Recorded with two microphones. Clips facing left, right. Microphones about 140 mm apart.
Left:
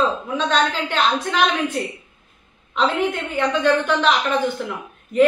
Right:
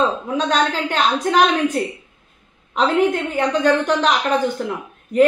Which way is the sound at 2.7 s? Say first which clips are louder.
Right 4 dB; 40° right (ahead or behind).